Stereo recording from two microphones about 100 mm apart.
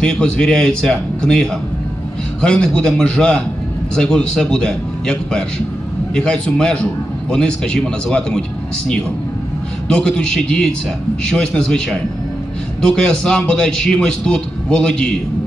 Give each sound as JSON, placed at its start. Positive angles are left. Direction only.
{"t": 0.0, "sound": "a man's voice", "side_deg": 10}